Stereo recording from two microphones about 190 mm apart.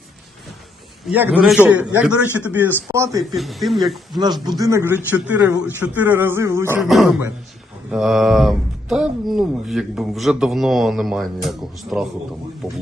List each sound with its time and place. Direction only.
1.0 s speech: 10° right (ahead or behind)
3.3 s speech: centre (ahead or behind)
4.4 s speech: 20° right (ahead or behind)
6.8 s speech: centre (ahead or behind)